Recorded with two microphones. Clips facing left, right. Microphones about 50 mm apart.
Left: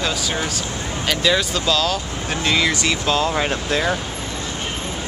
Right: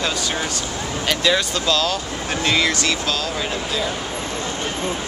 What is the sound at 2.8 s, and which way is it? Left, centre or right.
Speech, left.